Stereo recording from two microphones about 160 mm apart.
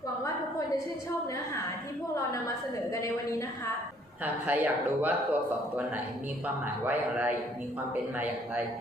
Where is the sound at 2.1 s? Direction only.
20° left (ahead or behind).